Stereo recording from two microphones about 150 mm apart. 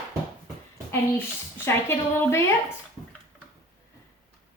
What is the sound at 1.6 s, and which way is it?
Speech, 15° left (ahead or behind).